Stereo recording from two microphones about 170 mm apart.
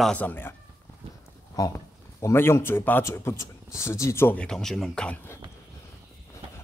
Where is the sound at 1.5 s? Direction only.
20° left (ahead or behind).